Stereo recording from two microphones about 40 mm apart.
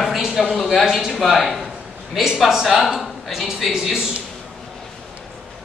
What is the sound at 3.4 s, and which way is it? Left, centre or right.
Speech, centre.